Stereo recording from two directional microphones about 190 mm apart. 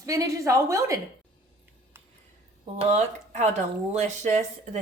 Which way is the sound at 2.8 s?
35° right (ahead or behind).